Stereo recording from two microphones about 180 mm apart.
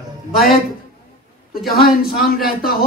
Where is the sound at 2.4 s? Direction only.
55° left (ahead or behind).